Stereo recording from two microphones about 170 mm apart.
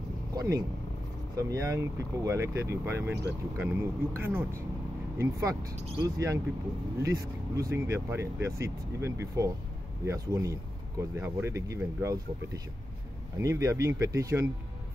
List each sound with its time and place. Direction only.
0.4 s speech: 20° right (ahead or behind)
13.4 s speech: 15° right (ahead or behind)